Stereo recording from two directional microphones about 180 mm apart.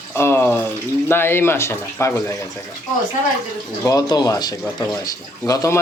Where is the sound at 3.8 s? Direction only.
20° left (ahead or behind).